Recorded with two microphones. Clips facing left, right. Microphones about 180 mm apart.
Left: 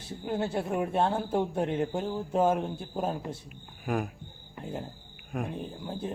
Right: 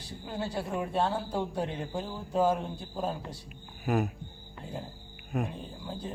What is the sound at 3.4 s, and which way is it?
Speech, 5° right (ahead or behind).